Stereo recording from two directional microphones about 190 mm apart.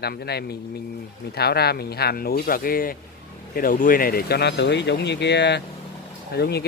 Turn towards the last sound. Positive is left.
turn(degrees=60)  # may be behind; listen again after turning